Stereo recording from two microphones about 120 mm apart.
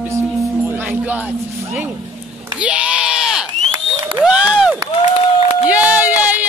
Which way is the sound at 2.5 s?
10° right (ahead or behind).